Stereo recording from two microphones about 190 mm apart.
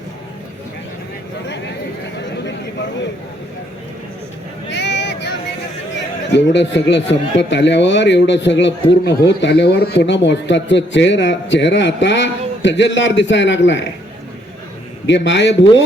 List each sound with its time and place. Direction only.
4.7 s a sound: 65° left (ahead or behind)
6.3 s speech: 70° left (ahead or behind)
15.0 s speech: 70° left (ahead or behind)